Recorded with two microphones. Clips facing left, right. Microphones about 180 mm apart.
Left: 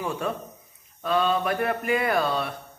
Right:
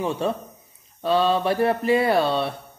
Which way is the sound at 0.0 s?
30° right (ahead or behind).